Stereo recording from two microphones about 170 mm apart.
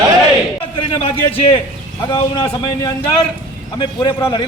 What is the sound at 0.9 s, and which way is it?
A man's voice, 30° left (ahead or behind).